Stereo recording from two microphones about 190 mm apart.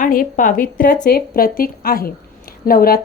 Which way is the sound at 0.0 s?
45° left (ahead or behind).